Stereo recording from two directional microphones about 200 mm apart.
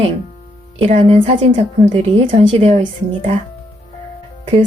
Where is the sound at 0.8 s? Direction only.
30° right (ahead or behind).